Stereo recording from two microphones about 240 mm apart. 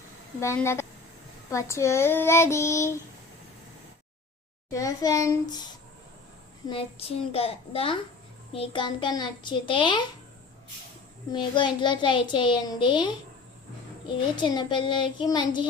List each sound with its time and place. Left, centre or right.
0.3 s child singing: centre
4.7 s child singing: centre
6.7 s a child's voice: left
11.3 s a child's voice: centre
14.3 s a child's voice: centre